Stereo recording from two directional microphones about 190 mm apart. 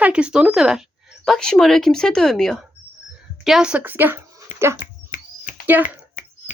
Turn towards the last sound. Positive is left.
turn(degrees=40)  # may be behind; listen again after turning